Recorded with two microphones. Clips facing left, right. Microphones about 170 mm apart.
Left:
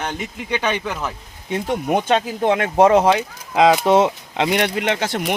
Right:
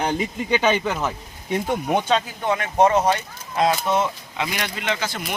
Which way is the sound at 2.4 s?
55° left (ahead or behind).